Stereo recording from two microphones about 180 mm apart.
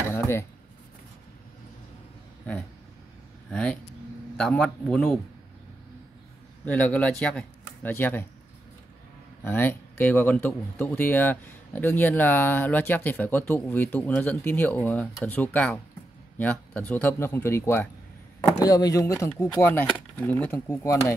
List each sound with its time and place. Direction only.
0.1 s a sound: 15° left (ahead or behind)
3.4 s speech: 5° left (ahead or behind)
6.6 s speech: 10° left (ahead or behind)
9.4 s speech: 10° left (ahead or behind)